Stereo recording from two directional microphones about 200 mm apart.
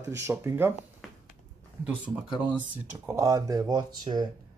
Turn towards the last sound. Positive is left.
turn(degrees=-20)  # may be behind; listen again after turning